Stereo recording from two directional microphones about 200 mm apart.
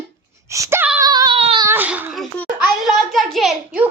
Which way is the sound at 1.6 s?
10° right (ahead or behind).